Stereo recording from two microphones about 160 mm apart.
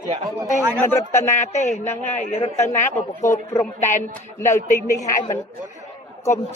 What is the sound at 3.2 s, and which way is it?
Speech, 20° left (ahead or behind).